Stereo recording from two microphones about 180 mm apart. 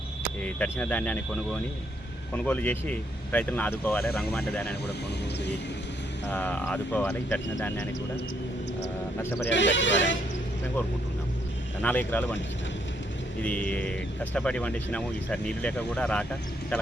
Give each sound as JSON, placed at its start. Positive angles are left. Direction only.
{"t": 0.4, "sound": "speech", "side_deg": 10}
{"t": 2.3, "sound": "speech", "side_deg": 10}
{"t": 6.3, "sound": "speech", "side_deg": 10}
{"t": 9.5, "sound": "speech", "side_deg": 90}
{"t": 11.8, "sound": "speech", "side_deg": 10}
{"t": 13.4, "sound": "speech", "side_deg": 10}